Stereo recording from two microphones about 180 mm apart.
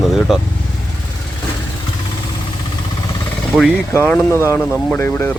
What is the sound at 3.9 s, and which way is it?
Speech, 15° left (ahead or behind).